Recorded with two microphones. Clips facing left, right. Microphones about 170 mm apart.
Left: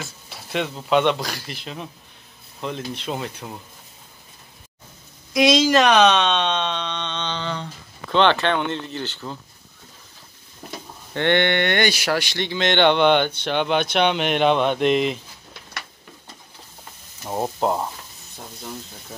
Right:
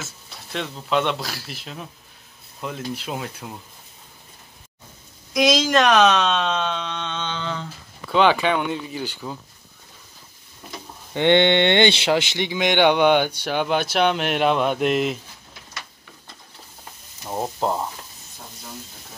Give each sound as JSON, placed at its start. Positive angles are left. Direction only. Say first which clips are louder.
{"t": 0.0, "sound": "speech", "louder": "left 2 dB", "side_deg": 5}
{"t": 5.3, "sound": "speech", "louder": "left 2 dB", "side_deg": 0}
{"t": 11.1, "sound": "speech", "louder": "right 3 dB", "side_deg": -20}
{"t": 17.2, "sound": "frying", "louder": "left 2 dB", "side_deg": 5}